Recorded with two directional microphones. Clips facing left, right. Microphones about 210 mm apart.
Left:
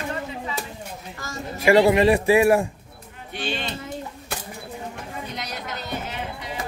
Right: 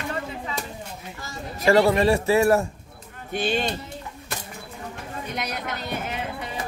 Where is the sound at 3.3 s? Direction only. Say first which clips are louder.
Right 5 dB; 45° right (ahead or behind).